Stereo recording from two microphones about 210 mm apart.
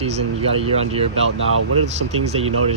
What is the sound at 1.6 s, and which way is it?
Speech, 90° right.